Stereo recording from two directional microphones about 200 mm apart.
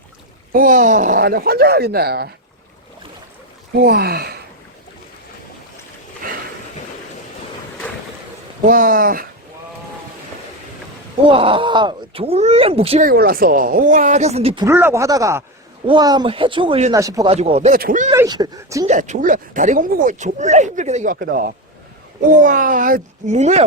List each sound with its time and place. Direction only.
0.5 s speech: 45° right (ahead or behind)
3.8 s speech: 55° right (ahead or behind)
8.6 s speech: 45° right (ahead or behind)
11.3 s speech: 25° right (ahead or behind)
13.1 s speech: 45° right (ahead or behind); by 14.7 s 25° right (ahead or behind)
14.7 s speech: 10° right (ahead or behind); by 16.9 s 30° right (ahead or behind)
16.9 s speech: 15° right (ahead or behind)
17.3 s speech: 30° right (ahead or behind)
17.7 s speech: 40° right (ahead or behind)
18.1 s speech: 20° right (ahead or behind)
18.9 s speech: 40° right (ahead or behind)